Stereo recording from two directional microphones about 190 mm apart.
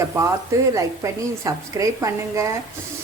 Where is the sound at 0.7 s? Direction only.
15° right (ahead or behind).